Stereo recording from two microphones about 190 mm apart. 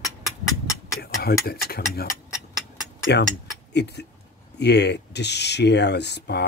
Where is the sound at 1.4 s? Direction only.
55° left (ahead or behind).